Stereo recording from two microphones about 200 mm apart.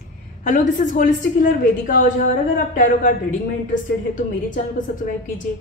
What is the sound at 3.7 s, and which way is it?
A woman's voice, 40° left (ahead or behind).